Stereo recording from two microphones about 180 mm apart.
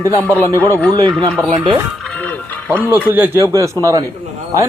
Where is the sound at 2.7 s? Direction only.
10° right (ahead or behind).